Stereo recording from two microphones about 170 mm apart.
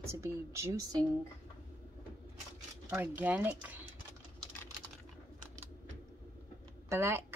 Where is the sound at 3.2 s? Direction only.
10° right (ahead or behind).